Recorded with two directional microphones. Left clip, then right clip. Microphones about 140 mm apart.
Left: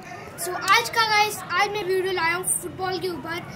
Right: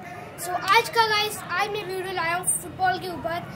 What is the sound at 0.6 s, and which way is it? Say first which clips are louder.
A child's voice: even; 25° right (ahead or behind).